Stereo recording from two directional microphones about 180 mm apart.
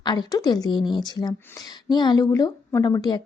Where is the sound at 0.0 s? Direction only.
25° left (ahead or behind).